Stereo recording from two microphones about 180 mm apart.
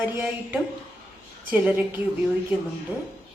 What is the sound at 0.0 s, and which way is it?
Speech, 10° right (ahead or behind).